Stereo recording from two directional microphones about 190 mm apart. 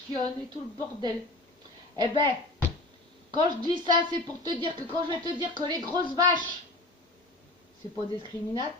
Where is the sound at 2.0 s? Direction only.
25° right (ahead or behind).